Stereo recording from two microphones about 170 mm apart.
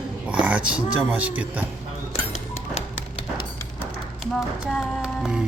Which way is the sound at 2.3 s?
35° left (ahead or behind).